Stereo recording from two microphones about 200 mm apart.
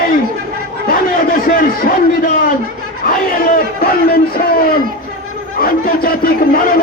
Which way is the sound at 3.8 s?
50° left (ahead or behind).